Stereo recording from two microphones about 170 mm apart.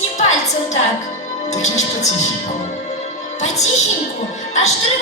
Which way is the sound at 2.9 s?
40° left (ahead or behind).